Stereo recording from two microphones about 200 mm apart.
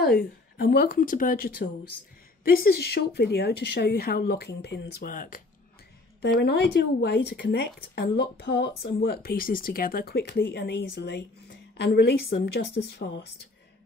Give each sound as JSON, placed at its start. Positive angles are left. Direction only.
{"t": 0.2, "sound": "speech", "side_deg": 50}
{"t": 6.2, "sound": "a woman's voice", "side_deg": 55}